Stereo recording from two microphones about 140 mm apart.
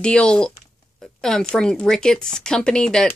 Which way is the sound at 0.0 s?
5° left (ahead or behind).